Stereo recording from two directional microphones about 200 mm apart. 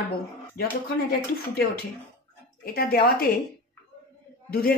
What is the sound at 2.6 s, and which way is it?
Speech, 50° left (ahead or behind).